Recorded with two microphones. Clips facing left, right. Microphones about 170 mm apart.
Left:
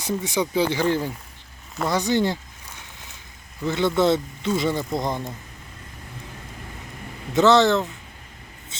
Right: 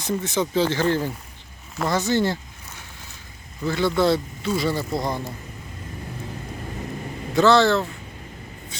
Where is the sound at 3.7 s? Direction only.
20° left (ahead or behind).